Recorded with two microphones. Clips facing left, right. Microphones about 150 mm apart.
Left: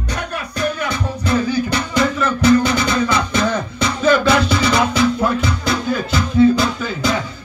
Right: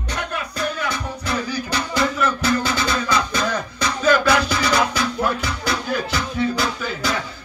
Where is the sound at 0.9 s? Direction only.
20° left (ahead or behind).